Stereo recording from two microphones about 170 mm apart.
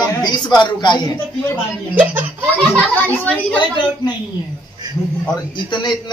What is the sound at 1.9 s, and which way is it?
Speech, 10° right (ahead or behind).